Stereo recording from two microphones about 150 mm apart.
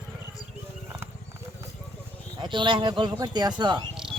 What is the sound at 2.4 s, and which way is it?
Speech, 30° right (ahead or behind).